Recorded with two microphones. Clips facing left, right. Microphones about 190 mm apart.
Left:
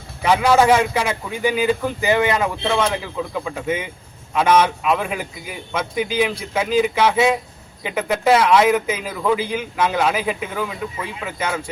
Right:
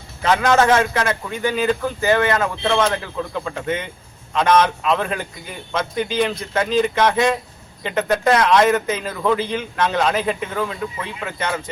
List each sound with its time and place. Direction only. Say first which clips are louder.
0.2 s a man's voice: left 1 dB; 10° left (ahead or behind)